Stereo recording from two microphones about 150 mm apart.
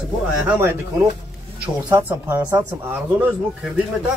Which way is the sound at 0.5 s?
15° right (ahead or behind).